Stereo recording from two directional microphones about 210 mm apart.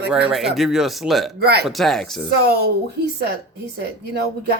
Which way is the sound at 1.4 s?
50° right (ahead or behind).